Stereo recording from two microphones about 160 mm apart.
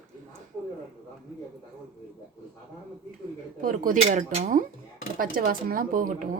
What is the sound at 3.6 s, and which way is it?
Speech, 55° right (ahead or behind).